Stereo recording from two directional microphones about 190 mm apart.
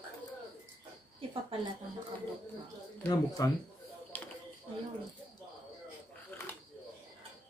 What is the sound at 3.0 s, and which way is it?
Speech, 20° left (ahead or behind).